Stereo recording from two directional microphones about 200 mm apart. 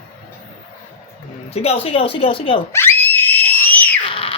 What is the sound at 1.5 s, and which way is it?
Speech, 30° left (ahead or behind).